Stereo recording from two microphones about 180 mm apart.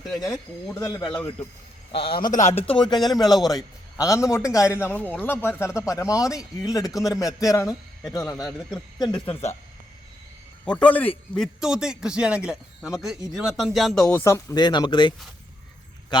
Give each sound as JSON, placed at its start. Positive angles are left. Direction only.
{"t": 0.0, "sound": "a man's voice", "side_deg": 0}
{"t": 0.7, "sound": "a man's voice", "side_deg": 20}
{"t": 1.9, "sound": "a man's voice", "side_deg": 30}
{"t": 2.3, "sound": "speech", "side_deg": 40}
{"t": 2.7, "sound": "a man's voice", "side_deg": 25}
{"t": 10.7, "sound": "a man's voice", "side_deg": 5}
{"t": 11.3, "sound": "a man's voice", "side_deg": -5}